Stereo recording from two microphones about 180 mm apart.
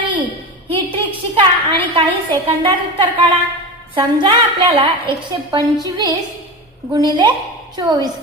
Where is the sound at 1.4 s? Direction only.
25° right (ahead or behind).